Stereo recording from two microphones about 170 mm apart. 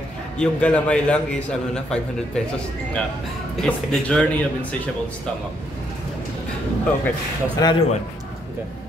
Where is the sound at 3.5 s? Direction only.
5° left (ahead or behind).